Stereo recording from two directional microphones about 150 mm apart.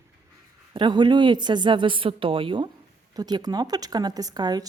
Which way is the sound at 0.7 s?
30° right (ahead or behind).